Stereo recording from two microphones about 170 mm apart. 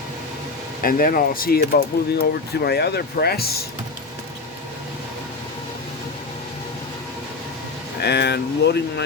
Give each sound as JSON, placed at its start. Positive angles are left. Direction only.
{"t": 0.8, "sound": "speech", "side_deg": 55}
{"t": 8.0, "sound": "speech", "side_deg": 80}